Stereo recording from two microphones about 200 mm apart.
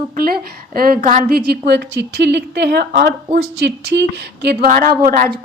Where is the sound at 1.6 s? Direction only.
60° right (ahead or behind).